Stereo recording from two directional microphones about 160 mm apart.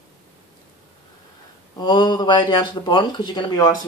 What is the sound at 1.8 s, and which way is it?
Speech, 25° left (ahead or behind).